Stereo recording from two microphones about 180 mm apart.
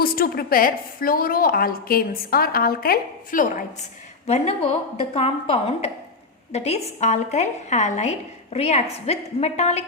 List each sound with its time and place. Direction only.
0.0 s a woman's voice: 55° left (ahead or behind)
4.3 s a woman's voice: 35° left (ahead or behind)